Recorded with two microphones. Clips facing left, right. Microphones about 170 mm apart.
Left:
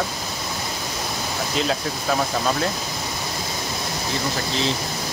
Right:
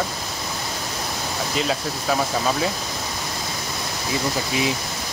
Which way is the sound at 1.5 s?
Centre (ahead or behind).